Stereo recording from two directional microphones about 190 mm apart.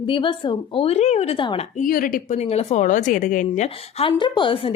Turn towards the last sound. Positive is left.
turn(degrees=30)  # may be behind; listen again after turning